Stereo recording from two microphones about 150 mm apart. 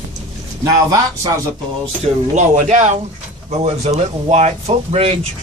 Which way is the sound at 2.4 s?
55° right (ahead or behind).